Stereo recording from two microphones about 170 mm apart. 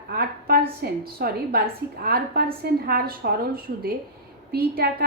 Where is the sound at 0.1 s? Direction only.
65° right (ahead or behind).